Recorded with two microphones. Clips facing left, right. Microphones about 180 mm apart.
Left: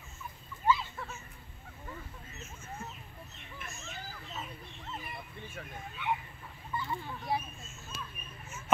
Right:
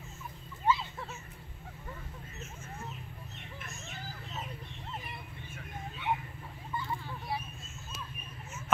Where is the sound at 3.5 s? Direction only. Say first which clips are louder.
Left 2 dB; centre (ahead or behind).